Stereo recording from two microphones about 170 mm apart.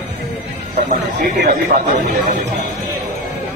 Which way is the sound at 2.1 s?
65° right (ahead or behind).